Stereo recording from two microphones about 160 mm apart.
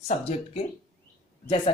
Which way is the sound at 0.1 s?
40° left (ahead or behind).